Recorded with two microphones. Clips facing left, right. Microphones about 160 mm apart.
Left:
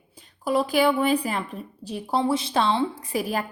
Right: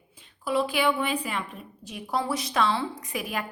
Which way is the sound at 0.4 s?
40° left (ahead or behind).